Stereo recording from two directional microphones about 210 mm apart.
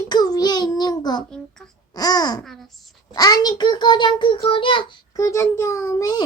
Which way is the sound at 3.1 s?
20° left (ahead or behind).